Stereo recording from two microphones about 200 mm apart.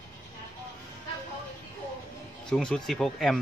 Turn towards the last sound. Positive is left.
turn(degrees=0)  # may be behind; listen again after turning